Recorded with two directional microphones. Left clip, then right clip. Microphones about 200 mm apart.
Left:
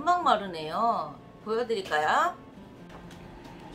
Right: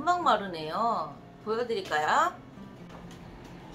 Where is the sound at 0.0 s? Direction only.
5° left (ahead or behind).